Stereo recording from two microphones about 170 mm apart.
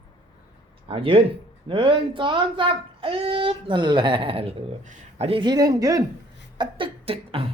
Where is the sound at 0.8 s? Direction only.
35° right (ahead or behind).